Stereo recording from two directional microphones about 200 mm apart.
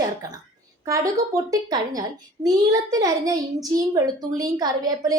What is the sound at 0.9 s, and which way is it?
A child's voice, 15° right (ahead or behind).